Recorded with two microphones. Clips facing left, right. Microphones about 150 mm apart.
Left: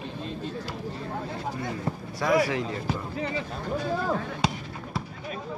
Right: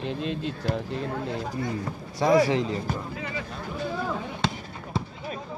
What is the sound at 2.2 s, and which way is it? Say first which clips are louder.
Speech: right 3 dB; 30° right (ahead or behind).